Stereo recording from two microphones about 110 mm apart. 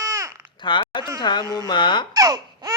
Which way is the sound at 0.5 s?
45° left (ahead or behind).